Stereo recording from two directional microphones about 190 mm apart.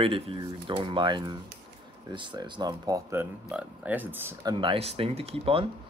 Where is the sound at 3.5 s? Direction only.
5° right (ahead or behind).